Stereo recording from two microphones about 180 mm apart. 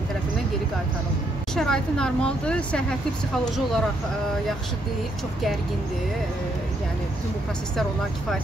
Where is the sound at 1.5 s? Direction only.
5° left (ahead or behind).